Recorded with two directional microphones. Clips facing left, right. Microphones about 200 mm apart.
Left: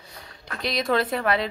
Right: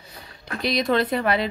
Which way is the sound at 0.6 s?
Centre (ahead or behind).